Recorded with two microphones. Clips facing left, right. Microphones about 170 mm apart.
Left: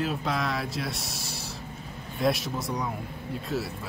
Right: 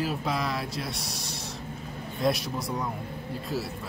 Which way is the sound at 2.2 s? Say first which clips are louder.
Left 1 dB; centre (ahead or behind).